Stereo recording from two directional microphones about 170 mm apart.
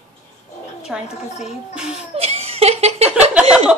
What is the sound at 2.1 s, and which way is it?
Laughter, 35° right (ahead or behind).